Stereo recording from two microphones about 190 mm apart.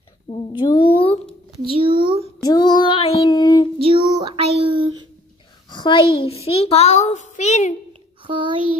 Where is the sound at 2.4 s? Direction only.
20° left (ahead or behind).